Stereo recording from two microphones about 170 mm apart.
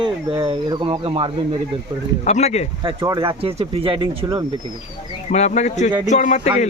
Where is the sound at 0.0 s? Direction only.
30° right (ahead or behind).